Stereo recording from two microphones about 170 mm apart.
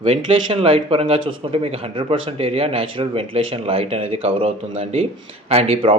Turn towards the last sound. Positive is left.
turn(degrees=-35)  # may be behind; listen again after turning